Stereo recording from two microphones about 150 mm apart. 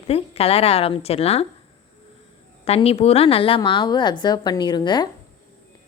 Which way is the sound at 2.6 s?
40° left (ahead or behind).